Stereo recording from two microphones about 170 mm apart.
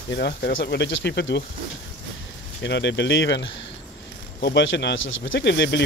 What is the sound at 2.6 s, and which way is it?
Speech, 90° left.